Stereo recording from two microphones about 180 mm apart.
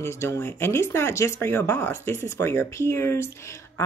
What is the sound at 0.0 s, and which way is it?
Speech, 15° left (ahead or behind).